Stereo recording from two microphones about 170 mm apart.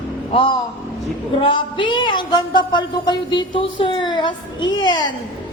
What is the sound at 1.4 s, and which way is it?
Speech, 30° left (ahead or behind).